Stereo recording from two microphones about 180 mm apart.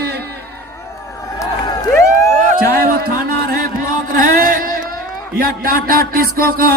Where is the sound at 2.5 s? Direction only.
55° right (ahead or behind).